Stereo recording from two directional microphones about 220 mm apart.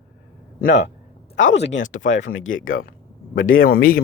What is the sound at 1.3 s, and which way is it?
Speech, 55° left (ahead or behind).